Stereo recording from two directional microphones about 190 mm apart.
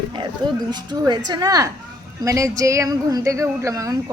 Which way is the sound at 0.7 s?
20° right (ahead or behind).